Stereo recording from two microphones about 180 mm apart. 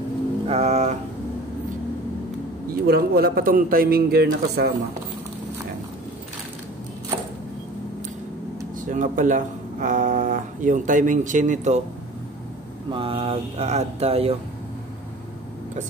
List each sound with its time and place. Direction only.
0.5 s speech: 35° right (ahead or behind)
2.9 s a man's voice: 60° right (ahead or behind)
8.8 s speech: 45° right (ahead or behind)
12.9 s speech: 30° right (ahead or behind)